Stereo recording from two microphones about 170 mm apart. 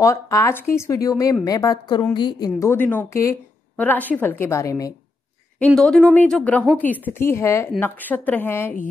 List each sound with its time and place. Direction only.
0.0 s a woman's voice: 15° left (ahead or behind)
2.6 s a woman's voice: 15° left (ahead or behind)
5.8 s a woman's voice: 5° left (ahead or behind)